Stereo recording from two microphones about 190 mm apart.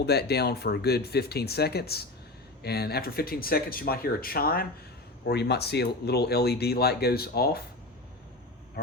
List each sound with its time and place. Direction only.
0.0 s speech: 60° left (ahead or behind)